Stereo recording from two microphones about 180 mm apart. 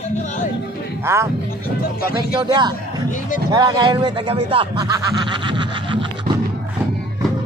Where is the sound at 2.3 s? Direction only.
25° right (ahead or behind).